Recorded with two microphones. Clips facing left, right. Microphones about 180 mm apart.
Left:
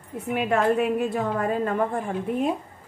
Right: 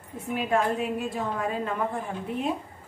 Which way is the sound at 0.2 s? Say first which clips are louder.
Left 3 dB; 65° left (ahead or behind).